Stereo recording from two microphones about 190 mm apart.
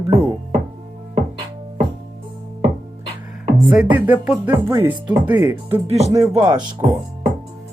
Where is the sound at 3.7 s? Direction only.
5° right (ahead or behind).